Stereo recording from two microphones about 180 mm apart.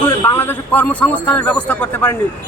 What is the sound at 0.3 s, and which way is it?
A man's voice, 10° left (ahead or behind).